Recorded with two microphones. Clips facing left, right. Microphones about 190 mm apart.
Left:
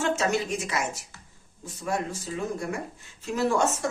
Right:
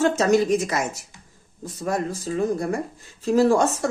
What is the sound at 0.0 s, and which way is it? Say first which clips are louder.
Speech: right 7 dB; 40° right (ahead or behind).